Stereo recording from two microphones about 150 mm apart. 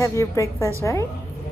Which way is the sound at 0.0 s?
20° left (ahead or behind).